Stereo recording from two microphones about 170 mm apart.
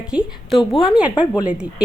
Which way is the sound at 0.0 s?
5° right (ahead or behind).